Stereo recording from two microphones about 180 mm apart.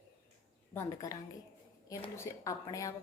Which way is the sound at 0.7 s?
15° left (ahead or behind).